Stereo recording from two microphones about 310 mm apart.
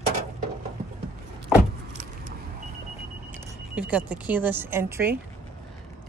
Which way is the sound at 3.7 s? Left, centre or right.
Centre.